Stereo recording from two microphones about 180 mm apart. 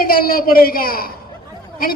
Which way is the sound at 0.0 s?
55° left (ahead or behind).